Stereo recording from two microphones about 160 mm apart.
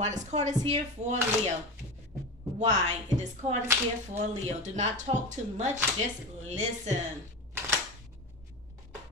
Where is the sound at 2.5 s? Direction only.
50° right (ahead or behind).